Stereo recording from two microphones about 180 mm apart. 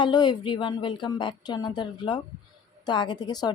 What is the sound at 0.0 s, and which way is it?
Speech, 25° left (ahead or behind).